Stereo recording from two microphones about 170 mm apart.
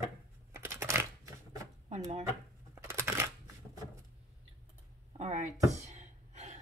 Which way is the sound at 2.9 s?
15° right (ahead or behind).